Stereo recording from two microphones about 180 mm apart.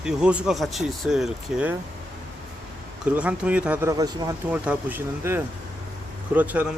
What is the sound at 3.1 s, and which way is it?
Speech, 5° right (ahead or behind).